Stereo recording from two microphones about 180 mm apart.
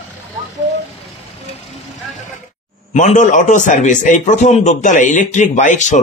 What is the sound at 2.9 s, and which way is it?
A man's voice, 40° left (ahead or behind).